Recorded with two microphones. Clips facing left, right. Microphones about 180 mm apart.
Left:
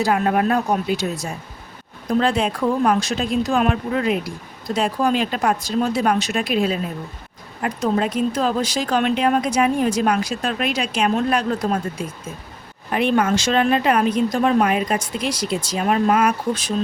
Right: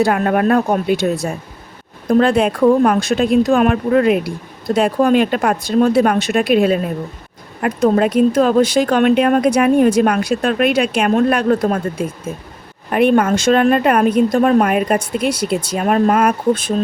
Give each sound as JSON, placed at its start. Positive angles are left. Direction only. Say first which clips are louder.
{"t": 0.0, "sound": "speech", "louder": "right 4 dB", "side_deg": -55}